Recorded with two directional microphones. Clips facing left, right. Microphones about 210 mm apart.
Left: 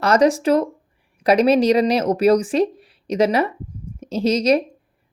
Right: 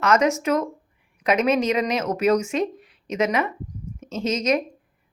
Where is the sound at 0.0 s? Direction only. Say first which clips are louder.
Left 4 dB; 35° left (ahead or behind).